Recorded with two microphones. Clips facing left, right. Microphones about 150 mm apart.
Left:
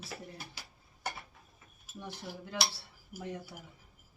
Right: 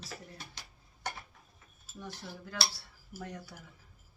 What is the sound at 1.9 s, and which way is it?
Speech, 10° left (ahead or behind).